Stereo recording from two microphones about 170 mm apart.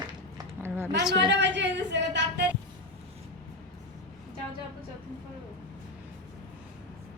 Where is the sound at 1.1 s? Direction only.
90° right.